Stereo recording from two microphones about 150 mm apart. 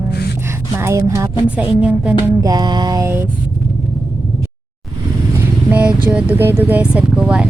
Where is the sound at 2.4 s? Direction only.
25° right (ahead or behind).